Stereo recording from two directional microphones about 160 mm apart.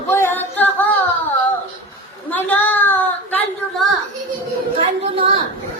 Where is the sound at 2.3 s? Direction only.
10° left (ahead or behind).